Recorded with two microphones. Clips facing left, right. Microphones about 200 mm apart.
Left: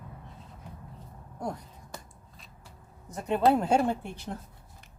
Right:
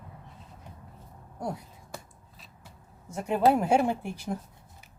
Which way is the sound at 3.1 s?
10° right (ahead or behind).